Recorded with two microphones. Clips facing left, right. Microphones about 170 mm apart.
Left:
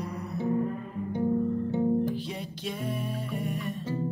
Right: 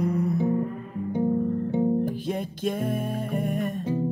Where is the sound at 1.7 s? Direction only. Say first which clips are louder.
Right 3 dB; 15° right (ahead or behind).